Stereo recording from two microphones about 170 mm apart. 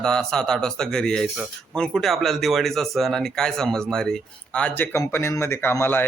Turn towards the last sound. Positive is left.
turn(degrees=15)  # may be behind; listen again after turning